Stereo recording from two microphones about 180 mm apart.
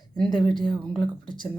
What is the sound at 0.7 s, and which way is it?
Speech, 25° left (ahead or behind).